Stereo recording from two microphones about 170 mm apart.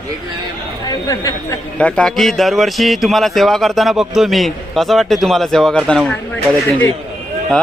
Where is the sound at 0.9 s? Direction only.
20° left (ahead or behind).